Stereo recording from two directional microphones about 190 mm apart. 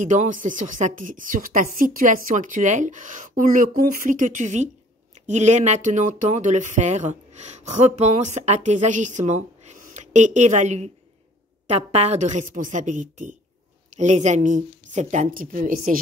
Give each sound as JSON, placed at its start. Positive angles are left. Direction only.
{"t": 0.0, "sound": "a woman's voice", "side_deg": -40}